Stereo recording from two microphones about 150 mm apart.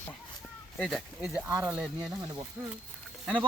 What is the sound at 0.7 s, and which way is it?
Speech, 5° left (ahead or behind).